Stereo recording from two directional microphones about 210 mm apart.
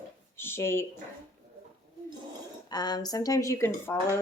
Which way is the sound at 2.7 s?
20° left (ahead or behind).